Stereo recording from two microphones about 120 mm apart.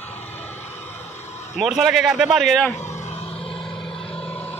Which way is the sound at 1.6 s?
Centre (ahead or behind).